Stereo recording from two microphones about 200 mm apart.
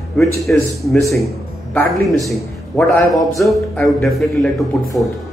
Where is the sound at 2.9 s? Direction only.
15° left (ahead or behind).